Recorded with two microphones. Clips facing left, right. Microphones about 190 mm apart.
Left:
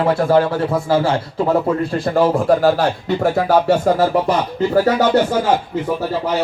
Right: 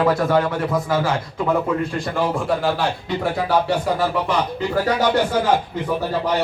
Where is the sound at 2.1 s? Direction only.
40° left (ahead or behind).